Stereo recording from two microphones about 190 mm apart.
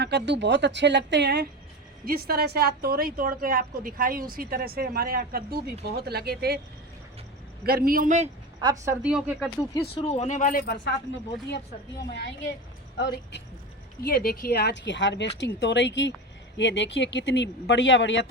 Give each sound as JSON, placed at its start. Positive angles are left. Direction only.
{"t": 0.0, "sound": "a woman's voice", "side_deg": -65}
{"t": 7.6, "sound": "a woman's voice", "side_deg": -50}
{"t": 8.8, "sound": "speech", "side_deg": -10}
{"t": 9.9, "sound": "speech", "side_deg": 30}
{"t": 12.1, "sound": "speech", "side_deg": 60}
{"t": 14.0, "sound": "speech", "side_deg": 50}